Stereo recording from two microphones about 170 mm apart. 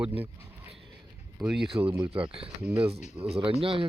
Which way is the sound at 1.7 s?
30° right (ahead or behind).